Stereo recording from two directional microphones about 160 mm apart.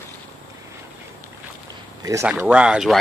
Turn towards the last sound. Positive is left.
turn(degrees=-5)  # may be behind; listen again after turning